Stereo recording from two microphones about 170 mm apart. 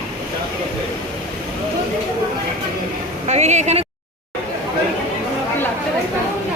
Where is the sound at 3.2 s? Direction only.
40° right (ahead or behind).